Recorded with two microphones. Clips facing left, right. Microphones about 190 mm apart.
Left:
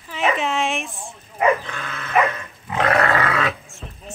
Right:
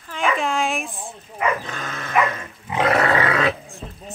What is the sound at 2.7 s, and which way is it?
Livestock, 5° right (ahead or behind).